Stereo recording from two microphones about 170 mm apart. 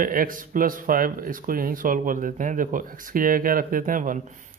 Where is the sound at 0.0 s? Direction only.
55° right (ahead or behind).